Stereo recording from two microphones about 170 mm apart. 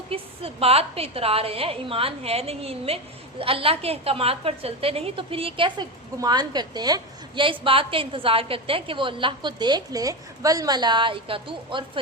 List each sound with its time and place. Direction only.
0.1 s a woman's voice: 35° right (ahead or behind)